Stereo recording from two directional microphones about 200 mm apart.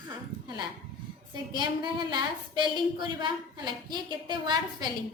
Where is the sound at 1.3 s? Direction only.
20° right (ahead or behind).